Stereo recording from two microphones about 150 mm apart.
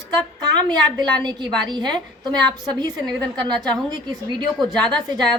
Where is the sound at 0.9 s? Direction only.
25° right (ahead or behind).